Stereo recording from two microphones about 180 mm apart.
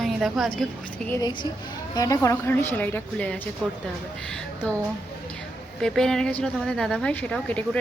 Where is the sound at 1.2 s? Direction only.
25° left (ahead or behind).